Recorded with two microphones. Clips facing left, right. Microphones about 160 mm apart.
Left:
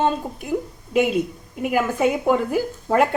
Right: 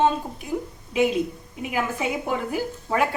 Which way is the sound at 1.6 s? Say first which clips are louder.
Left 7 dB; 50° left (ahead or behind).